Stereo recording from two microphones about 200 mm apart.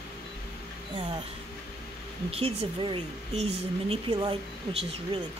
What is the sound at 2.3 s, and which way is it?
Speech, 30° right (ahead or behind).